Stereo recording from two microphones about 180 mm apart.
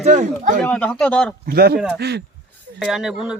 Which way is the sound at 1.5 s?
60° right (ahead or behind).